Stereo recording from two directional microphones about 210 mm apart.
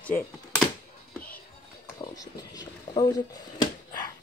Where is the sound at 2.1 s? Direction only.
15° left (ahead or behind).